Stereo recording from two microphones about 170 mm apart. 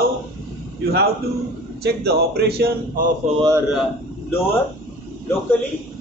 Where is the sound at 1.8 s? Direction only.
70° right (ahead or behind).